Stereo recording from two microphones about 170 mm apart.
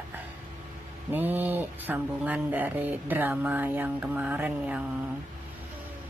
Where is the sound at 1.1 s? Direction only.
10° right (ahead or behind).